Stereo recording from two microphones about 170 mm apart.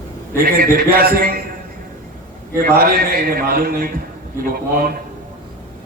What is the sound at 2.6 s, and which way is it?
A man's voice, 60° right (ahead or behind).